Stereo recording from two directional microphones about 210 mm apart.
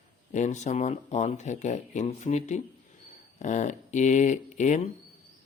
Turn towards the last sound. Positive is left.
turn(degrees=35)  # may be behind; listen again after turning